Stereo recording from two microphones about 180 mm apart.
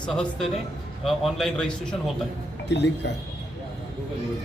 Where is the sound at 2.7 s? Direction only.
75° left (ahead or behind).